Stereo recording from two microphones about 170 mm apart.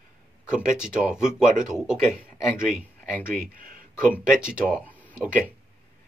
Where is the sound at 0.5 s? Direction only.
5° right (ahead or behind).